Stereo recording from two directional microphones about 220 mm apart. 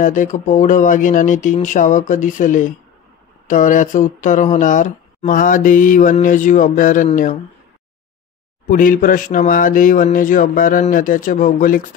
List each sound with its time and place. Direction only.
0.0 s speech: 35° left (ahead or behind)
8.6 s speech: 40° left (ahead or behind)